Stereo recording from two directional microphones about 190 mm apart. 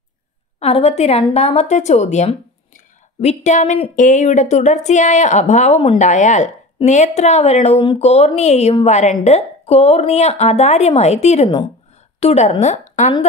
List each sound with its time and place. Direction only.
0.6 s a woman's voice: 30° left (ahead or behind)